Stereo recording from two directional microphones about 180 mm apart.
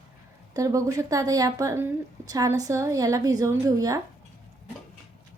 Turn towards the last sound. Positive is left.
turn(degrees=-20)  # may be behind; listen again after turning